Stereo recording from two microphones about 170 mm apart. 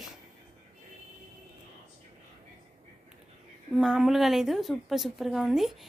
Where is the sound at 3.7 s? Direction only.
5° right (ahead or behind).